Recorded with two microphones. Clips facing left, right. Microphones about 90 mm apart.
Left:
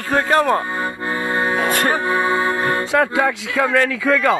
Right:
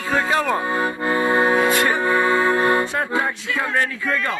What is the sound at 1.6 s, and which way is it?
Music, 45° left (ahead or behind).